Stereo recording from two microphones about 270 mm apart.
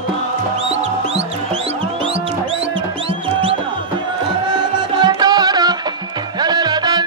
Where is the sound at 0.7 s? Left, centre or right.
Right.